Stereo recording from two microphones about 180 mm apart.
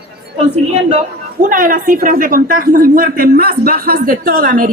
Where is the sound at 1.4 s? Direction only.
50° right (ahead or behind).